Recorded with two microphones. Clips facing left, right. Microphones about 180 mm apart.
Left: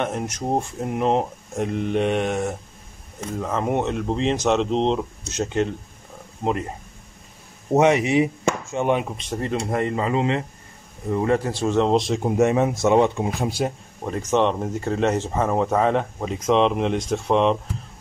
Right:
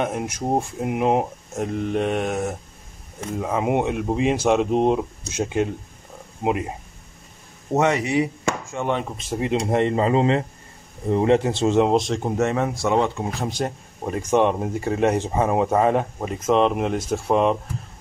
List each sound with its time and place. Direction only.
0.0 s speech: 5° right (ahead or behind)
7.7 s speech: 20° left (ahead or behind)
9.1 s speech: 5° right (ahead or behind)
9.5 s speech: 20° right (ahead or behind)
11.8 s speech: 5° right (ahead or behind)
14.0 s speech: 10° right (ahead or behind)